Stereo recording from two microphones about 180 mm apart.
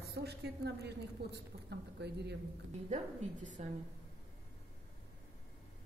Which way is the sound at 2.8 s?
40° right (ahead or behind).